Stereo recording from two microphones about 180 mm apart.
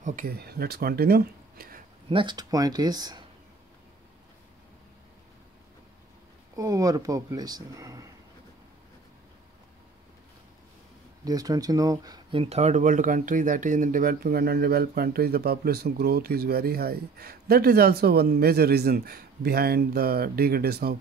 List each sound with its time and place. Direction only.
0.0 s speech: 50° right (ahead or behind)
2.0 s speech: 25° right (ahead or behind)
6.5 s speech: 20° right (ahead or behind)
11.2 s speech: 20° right (ahead or behind); by 20.9 s 60° right (ahead or behind)